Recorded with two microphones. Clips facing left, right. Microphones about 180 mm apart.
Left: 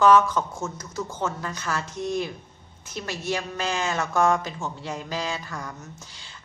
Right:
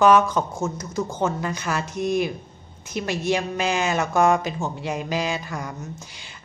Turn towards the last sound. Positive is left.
turn(degrees=-15)  # may be behind; listen again after turning